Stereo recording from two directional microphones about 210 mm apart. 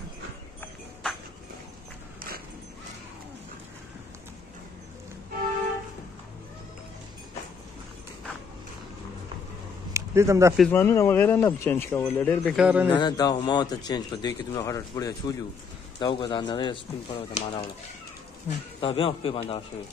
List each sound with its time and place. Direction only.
9.9 s speech: 15° right (ahead or behind)
10.6 s speech: 10° left (ahead or behind)
12.5 s a man's voice: 5° right (ahead or behind)
12.8 s a man's voice: 20° left (ahead or behind)
18.8 s a man's voice: 25° left (ahead or behind)